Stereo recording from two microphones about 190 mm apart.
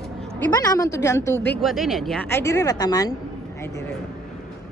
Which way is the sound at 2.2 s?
15° left (ahead or behind).